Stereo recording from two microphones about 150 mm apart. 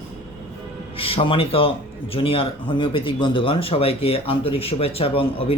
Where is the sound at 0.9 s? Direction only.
40° left (ahead or behind).